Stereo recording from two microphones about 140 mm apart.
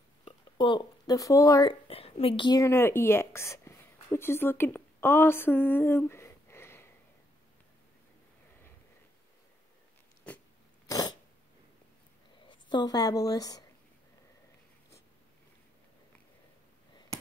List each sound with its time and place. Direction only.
0.2 s speech: 35° left (ahead or behind)
1.7 s a woman's voice: 45° left (ahead or behind); by 6.9 s 15° left (ahead or behind)
10.9 s throat clearing: 25° left (ahead or behind)
12.4 s a woman's voice: 30° left (ahead or behind)